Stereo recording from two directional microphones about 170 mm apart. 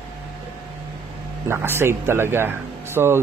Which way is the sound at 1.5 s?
15° right (ahead or behind).